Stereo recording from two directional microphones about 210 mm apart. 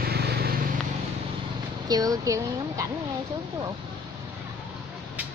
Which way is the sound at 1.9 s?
15° right (ahead or behind).